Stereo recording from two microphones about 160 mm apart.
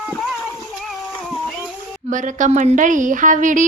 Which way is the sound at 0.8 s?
5° left (ahead or behind).